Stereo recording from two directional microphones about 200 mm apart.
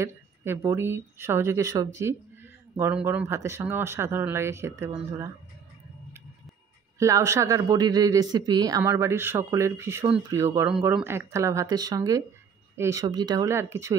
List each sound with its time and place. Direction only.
0.0 s speech: 15° right (ahead or behind)
7.0 s speech: 15° right (ahead or behind)